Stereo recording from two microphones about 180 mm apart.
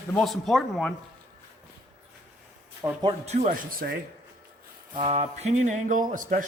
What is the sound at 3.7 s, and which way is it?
Speech, 55° right (ahead or behind).